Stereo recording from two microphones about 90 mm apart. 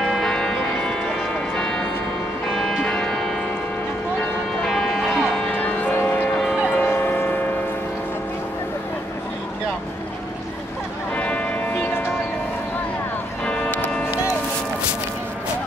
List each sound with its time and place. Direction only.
0.1 s church bell: 5° left (ahead or behind)
4.6 s church bell: 5° left (ahead or behind)
5.5 s music: 20° left (ahead or behind)
6.8 s a sound: 25° left (ahead or behind)
11.1 s music: 15° left (ahead or behind)
13.5 s music: 15° left (ahead or behind)